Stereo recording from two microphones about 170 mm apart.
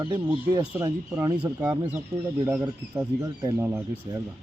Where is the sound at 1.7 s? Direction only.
10° right (ahead or behind).